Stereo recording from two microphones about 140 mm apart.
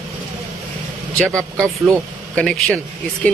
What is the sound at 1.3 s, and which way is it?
Speech, 20° right (ahead or behind).